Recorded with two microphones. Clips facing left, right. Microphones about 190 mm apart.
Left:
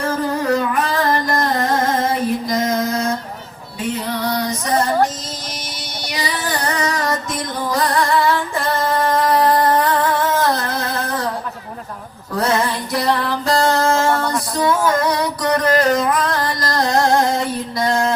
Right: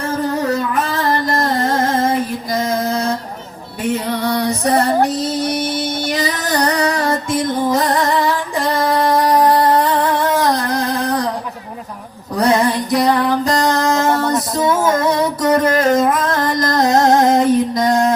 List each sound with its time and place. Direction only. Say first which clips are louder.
4.4 s female singing: right 5 dB; 65° right (ahead or behind)
6.1 s music: right 2 dB; 45° right (ahead or behind); by 9.2 s 10° right (ahead or behind)
9.3 s a sound: right 2 dB; 10° right (ahead or behind)
12.4 s music: right 4 dB; 15° right (ahead or behind)
16.0 s a sound: right 2 dB; 25° right (ahead or behind)
16.6 s music: right 5 dB; 20° right (ahead or behind)